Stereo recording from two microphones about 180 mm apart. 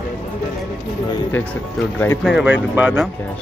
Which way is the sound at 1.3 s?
10° left (ahead or behind).